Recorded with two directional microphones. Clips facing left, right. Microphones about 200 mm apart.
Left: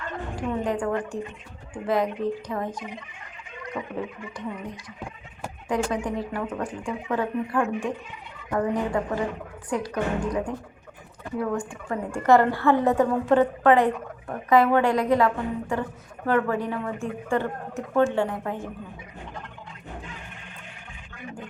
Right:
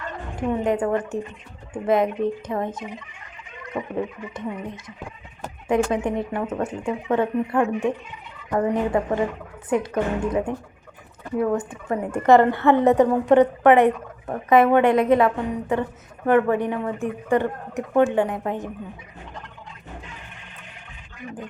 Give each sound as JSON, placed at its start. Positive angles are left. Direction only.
{"t": 0.3, "sound": "a woman's voice", "side_deg": -20}
{"t": 5.6, "sound": "a woman's voice", "side_deg": -25}